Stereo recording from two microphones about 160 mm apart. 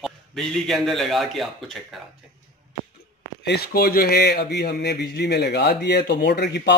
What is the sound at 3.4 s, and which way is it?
Speech, 80° left.